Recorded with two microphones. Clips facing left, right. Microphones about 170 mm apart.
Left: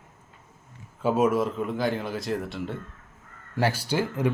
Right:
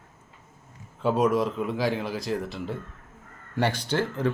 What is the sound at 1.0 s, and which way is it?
Speech, 5° left (ahead or behind).